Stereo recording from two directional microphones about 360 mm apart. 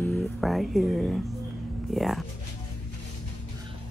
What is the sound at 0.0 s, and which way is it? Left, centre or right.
Speech, centre.